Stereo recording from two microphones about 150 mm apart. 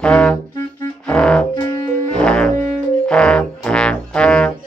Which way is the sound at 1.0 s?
5° left (ahead or behind).